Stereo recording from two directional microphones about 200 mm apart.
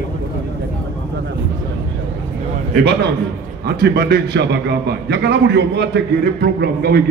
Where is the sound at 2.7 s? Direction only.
55° right (ahead or behind).